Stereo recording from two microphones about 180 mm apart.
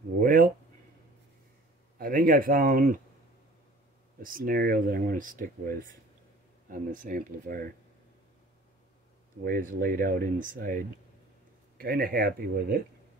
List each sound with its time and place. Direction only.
0.2 s a sound: 50° right (ahead or behind)
2.0 s speech: 50° right (ahead or behind)
4.2 s speech: 50° right (ahead or behind)
9.4 s speech: 50° right (ahead or behind)
11.8 s speech: 55° right (ahead or behind)